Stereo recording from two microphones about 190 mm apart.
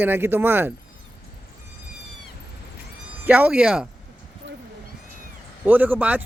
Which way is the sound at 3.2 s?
5° right (ahead or behind).